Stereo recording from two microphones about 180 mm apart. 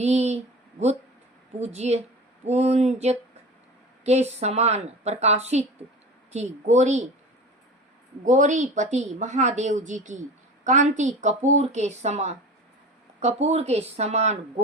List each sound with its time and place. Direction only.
0.0 s speech: 40° right (ahead or behind)
8.2 s a woman's voice: 45° right (ahead or behind)